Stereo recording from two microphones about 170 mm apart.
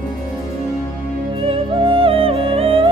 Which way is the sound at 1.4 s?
30° right (ahead or behind).